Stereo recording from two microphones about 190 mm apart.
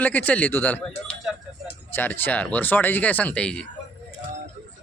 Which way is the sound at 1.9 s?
10° left (ahead or behind).